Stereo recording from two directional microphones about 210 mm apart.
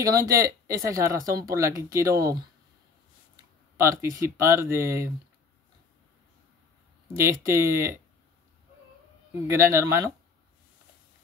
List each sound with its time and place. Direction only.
0.0 s speech: 15° right (ahead or behind)
3.7 s speech: 15° right (ahead or behind)
7.2 s speech: 10° right (ahead or behind)
9.5 s speech: 15° right (ahead or behind)